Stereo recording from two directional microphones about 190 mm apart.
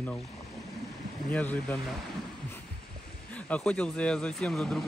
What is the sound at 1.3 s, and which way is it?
Speech, 10° left (ahead or behind).